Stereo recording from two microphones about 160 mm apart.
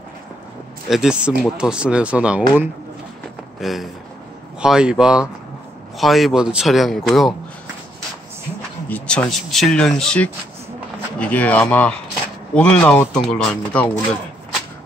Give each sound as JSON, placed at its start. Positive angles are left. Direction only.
{"t": 0.8, "sound": "speech", "side_deg": -5}
{"t": 3.6, "sound": "speech", "side_deg": 0}
{"t": 8.8, "sound": "speech", "side_deg": 10}